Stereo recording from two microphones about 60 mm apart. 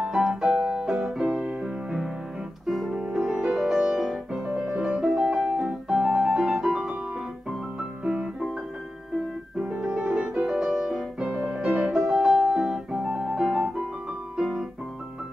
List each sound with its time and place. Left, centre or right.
0.0 s music: centre
4.6 s music: centre
4.8 s piano: centre
8.0 s music: right
9.6 s music: centre
14.3 s piano: centre